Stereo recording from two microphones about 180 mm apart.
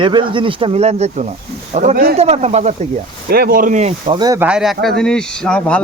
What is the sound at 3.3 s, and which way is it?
Speech, 55° right (ahead or behind).